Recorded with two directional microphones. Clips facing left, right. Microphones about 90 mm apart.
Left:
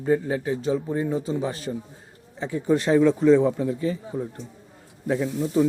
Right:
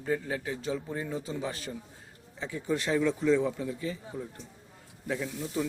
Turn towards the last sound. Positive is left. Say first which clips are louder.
# left 10 dB
turn(degrees=40)  # may be behind; listen again after turning